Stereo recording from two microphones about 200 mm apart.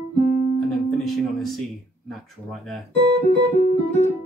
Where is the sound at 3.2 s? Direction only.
35° left (ahead or behind).